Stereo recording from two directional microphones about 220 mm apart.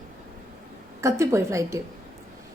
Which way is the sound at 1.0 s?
10° right (ahead or behind).